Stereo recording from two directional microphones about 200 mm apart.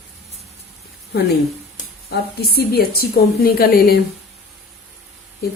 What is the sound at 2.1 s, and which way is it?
A woman's voice, 50° left (ahead or behind).